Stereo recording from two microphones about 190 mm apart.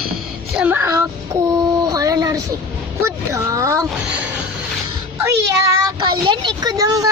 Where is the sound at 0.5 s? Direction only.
10° right (ahead or behind).